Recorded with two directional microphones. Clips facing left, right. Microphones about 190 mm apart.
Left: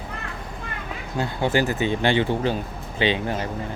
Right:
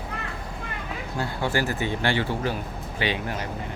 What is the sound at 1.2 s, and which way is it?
Speech, 20° left (ahead or behind).